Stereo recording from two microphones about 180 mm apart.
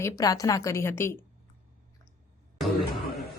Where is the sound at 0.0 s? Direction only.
20° left (ahead or behind).